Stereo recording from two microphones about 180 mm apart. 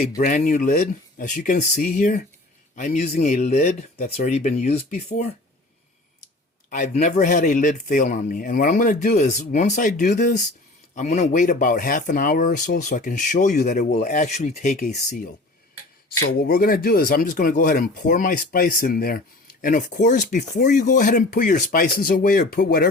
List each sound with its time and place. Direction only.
0.2 s speech: 50° left (ahead or behind)
6.7 s speech: 40° left (ahead or behind)
16.4 s speech: 55° left (ahead or behind)